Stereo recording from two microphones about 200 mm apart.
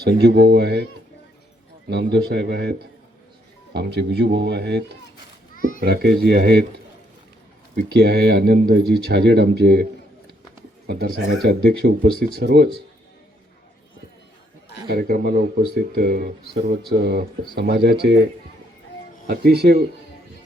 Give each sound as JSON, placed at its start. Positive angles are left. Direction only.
{"t": 0.0, "sound": "speech", "side_deg": -55}
{"t": 1.9, "sound": "speech", "side_deg": -55}
{"t": 5.5, "sound": "children playing", "side_deg": 45}
{"t": 5.8, "sound": "speech", "side_deg": -50}
{"t": 7.9, "sound": "speech", "side_deg": -55}
{"t": 10.8, "sound": "speech", "side_deg": -50}
{"t": 14.8, "sound": "speech", "side_deg": -50}
{"t": 19.3, "sound": "speech", "side_deg": -50}